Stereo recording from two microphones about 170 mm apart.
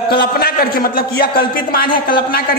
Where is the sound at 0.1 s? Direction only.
65° left (ahead or behind).